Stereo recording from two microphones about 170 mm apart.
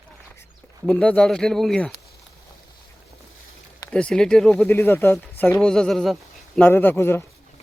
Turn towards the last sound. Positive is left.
turn(degrees=15)  # may be behind; listen again after turning